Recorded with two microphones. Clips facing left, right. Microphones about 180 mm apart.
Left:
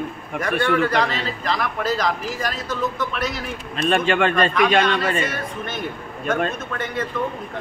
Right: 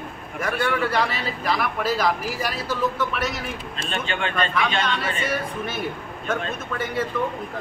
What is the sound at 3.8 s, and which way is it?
Speech, 65° left (ahead or behind).